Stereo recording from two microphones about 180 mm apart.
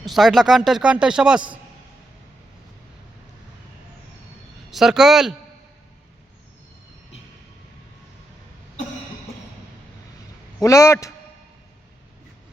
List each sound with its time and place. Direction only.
0.0 s a man's voice: centre (ahead or behind)
4.7 s speech: centre (ahead or behind)
10.6 s a man's voice: 15° left (ahead or behind)